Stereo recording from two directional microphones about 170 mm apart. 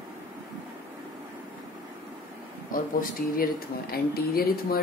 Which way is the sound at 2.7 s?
55° left (ahead or behind).